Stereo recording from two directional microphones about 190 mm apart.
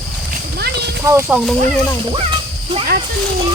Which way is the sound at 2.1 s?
30° right (ahead or behind).